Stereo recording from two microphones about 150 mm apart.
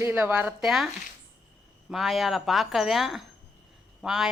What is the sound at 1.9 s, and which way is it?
Speech, centre (ahead or behind).